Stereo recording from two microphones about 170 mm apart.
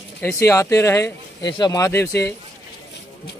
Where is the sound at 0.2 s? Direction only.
15° left (ahead or behind).